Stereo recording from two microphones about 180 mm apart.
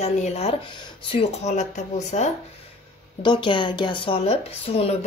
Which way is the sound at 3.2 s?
25° left (ahead or behind).